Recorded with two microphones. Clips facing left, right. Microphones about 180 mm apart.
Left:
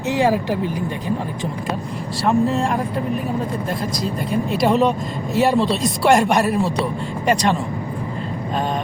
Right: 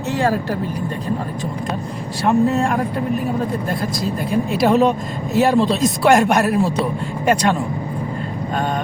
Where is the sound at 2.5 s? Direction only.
Centre (ahead or behind).